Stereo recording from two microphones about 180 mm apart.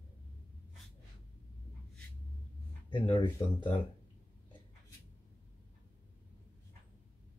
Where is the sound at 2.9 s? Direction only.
25° left (ahead or behind).